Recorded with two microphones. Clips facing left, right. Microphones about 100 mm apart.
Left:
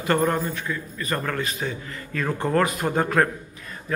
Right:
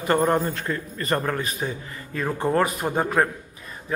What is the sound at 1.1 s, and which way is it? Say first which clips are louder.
A man's voice: right 2 dB; 20° right (ahead or behind).